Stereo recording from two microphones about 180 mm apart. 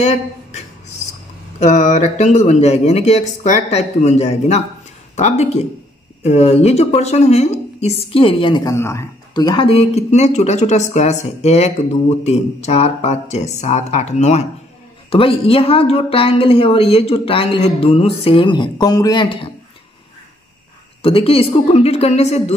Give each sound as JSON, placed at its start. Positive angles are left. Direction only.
{"t": 1.6, "sound": "a woman's voice", "side_deg": 40}
{"t": 21.0, "sound": "a woman's voice", "side_deg": 30}